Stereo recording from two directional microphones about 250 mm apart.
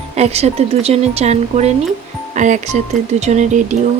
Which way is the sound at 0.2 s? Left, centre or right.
Right.